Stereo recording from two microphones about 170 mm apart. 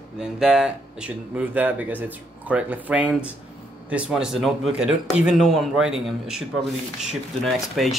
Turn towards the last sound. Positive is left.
turn(degrees=0)  # may be behind; listen again after turning